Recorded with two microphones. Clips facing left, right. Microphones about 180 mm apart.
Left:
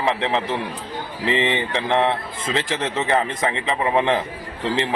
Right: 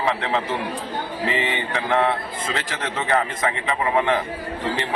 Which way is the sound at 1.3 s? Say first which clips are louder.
Left 5 dB; 30° left (ahead or behind).